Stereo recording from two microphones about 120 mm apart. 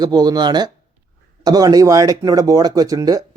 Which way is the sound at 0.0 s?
35° right (ahead or behind).